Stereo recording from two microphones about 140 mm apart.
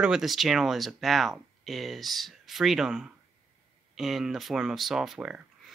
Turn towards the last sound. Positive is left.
turn(degrees=-5)  # may be behind; listen again after turning